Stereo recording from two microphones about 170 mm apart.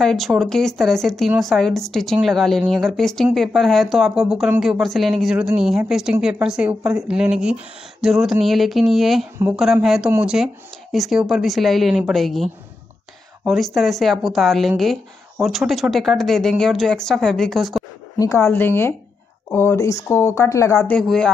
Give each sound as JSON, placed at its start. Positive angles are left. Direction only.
{"t": 0.0, "sound": "speech", "side_deg": 0}
{"t": 18.2, "sound": "speech", "side_deg": 15}
{"t": 21.0, "sound": "speech", "side_deg": 0}